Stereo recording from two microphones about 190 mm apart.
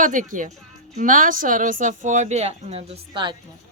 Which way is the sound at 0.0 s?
45° right (ahead or behind).